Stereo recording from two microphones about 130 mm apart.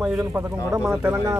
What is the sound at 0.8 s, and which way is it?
Speech, 10° right (ahead or behind).